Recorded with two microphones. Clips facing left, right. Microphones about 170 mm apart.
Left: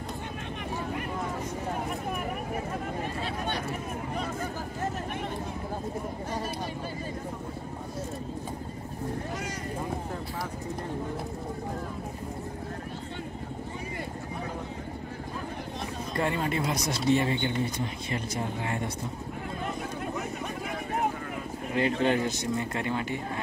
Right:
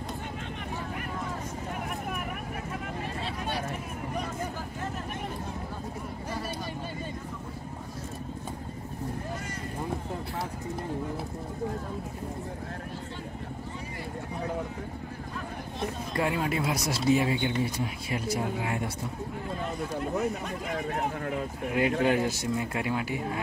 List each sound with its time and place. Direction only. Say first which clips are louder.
3.2 s a sound: left 1 dB; 5° right (ahead or behind)
16.2 s speech: even; 5° right (ahead or behind)
21.7 s speech: right 1 dB; 5° right (ahead or behind)